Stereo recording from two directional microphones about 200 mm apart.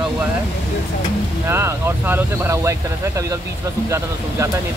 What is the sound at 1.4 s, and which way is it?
Speech, 15° right (ahead or behind).